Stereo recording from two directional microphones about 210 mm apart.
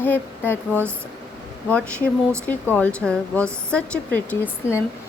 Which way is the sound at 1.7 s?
5° left (ahead or behind).